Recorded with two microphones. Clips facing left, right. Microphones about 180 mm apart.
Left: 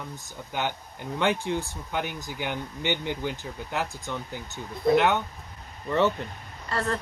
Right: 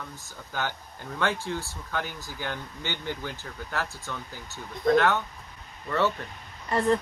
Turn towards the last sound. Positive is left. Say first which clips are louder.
# right 5 dB
turn(degrees=-15)  # may be behind; listen again after turning